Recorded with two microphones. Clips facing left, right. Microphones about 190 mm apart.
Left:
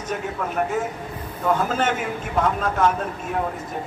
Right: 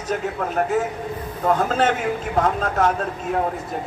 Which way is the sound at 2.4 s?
40° right (ahead or behind).